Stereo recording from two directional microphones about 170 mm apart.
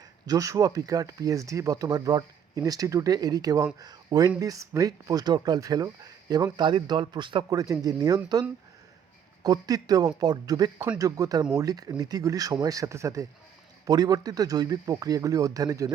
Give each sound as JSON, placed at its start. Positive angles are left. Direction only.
{"t": 0.3, "sound": "speech", "side_deg": -20}